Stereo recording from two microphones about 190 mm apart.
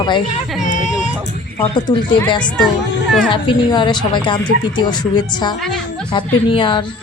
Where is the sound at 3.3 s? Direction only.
25° left (ahead or behind).